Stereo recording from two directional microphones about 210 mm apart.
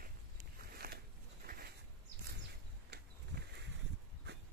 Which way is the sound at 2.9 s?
50° right (ahead or behind).